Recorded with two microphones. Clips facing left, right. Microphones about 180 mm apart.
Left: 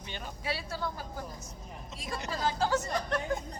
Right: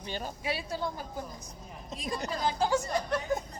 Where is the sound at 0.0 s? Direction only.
35° right (ahead or behind).